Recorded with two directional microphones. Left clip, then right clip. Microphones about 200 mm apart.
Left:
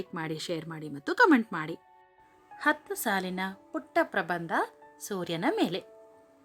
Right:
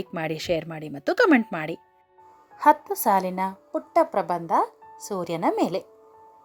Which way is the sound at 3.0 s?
10° right (ahead or behind).